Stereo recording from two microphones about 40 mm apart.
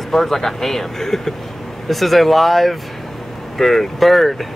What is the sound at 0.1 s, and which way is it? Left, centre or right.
Speech, centre.